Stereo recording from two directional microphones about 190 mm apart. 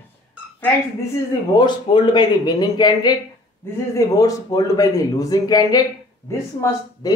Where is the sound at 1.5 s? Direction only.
25° left (ahead or behind).